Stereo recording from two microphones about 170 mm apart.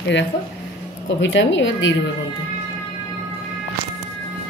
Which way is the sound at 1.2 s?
90° left.